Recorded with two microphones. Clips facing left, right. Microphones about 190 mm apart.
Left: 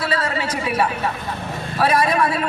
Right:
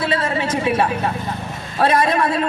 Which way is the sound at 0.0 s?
25° right (ahead or behind).